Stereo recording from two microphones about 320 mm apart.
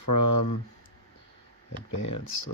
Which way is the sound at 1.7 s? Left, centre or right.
Left.